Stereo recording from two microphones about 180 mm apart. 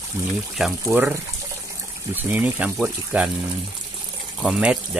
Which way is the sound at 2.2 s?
10° right (ahead or behind).